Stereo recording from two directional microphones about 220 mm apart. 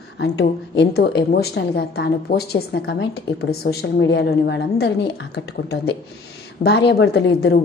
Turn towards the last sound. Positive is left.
turn(degrees=50)  # may be behind; listen again after turning